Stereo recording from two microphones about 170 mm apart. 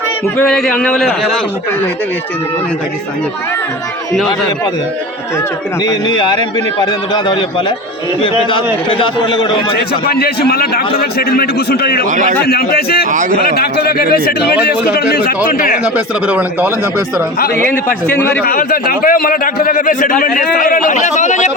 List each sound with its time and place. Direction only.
0.3 s a man's voice: 5° left (ahead or behind)
5.8 s a man's voice: 25° left (ahead or behind)
10.1 s a man's voice: 65° left (ahead or behind)
15.8 s speech: 5° right (ahead or behind)
17.6 s a man's voice: 10° left (ahead or behind)
18.4 s a man's voice: 60° left (ahead or behind)